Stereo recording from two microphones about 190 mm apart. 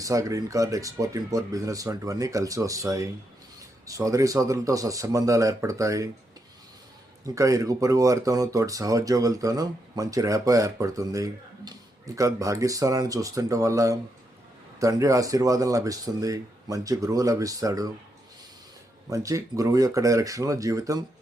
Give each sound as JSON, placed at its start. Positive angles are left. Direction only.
{"t": 0.0, "sound": "speech", "side_deg": -15}
{"t": 7.3, "sound": "speech", "side_deg": -15}
{"t": 19.1, "sound": "speech", "side_deg": -15}